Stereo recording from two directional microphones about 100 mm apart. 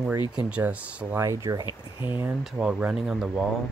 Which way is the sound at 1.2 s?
35° right (ahead or behind).